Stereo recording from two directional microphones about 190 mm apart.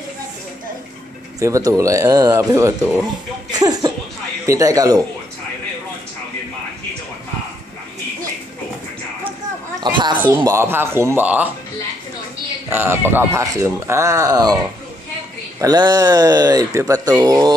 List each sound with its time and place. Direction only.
1.4 s speech: 15° right (ahead or behind)
9.8 s speech: 25° right (ahead or behind)
12.6 s speech: 10° right (ahead or behind)
15.6 s speech: 20° right (ahead or behind)